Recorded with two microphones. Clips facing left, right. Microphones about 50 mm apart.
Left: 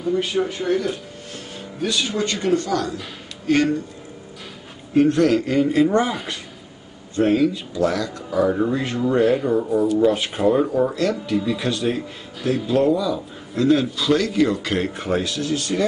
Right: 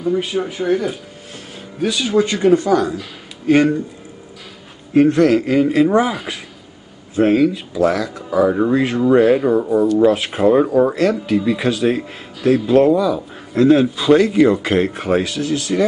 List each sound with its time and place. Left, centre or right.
0.0 s speech: centre
4.9 s speech: centre
8.5 s speech: centre
8.8 s speech: centre
13.9 s speech: right
14.9 s speech: centre